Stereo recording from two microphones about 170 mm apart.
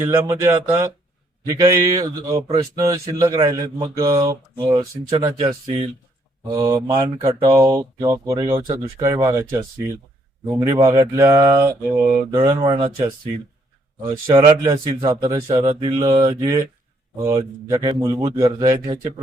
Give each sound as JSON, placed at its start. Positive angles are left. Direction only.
{"t": 0.0, "sound": "speech", "side_deg": -15}
{"t": 6.5, "sound": "speech", "side_deg": -20}
{"t": 14.3, "sound": "speech", "side_deg": -25}
{"t": 15.4, "sound": "speech", "side_deg": -30}